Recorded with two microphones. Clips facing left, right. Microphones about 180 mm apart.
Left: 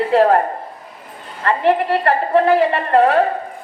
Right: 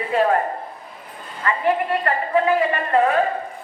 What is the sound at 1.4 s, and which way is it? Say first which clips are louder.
A man's voice: left 5 dB; 75° left (ahead or behind).